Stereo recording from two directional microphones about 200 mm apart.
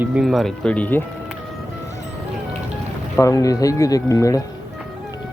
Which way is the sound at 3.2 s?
15° left (ahead or behind).